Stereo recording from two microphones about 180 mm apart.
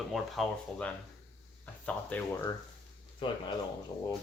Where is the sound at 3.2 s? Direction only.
30° left (ahead or behind).